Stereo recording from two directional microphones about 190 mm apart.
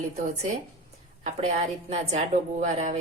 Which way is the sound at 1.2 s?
35° right (ahead or behind).